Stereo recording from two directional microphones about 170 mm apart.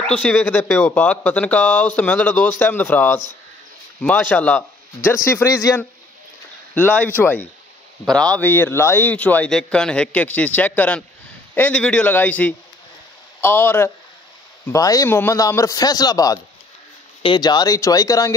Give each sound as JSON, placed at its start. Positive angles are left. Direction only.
{"t": 0.0, "sound": "a man's voice", "side_deg": 5}